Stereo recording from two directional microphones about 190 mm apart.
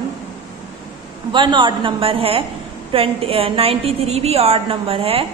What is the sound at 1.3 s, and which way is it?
A woman's voice, 25° right (ahead or behind).